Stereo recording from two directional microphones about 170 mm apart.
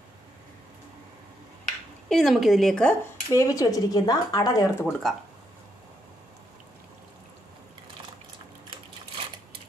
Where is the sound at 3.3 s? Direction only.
20° left (ahead or behind).